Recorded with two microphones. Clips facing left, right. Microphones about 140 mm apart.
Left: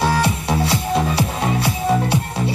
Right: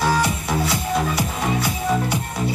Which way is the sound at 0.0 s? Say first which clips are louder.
Left 2 dB; 25° left (ahead or behind).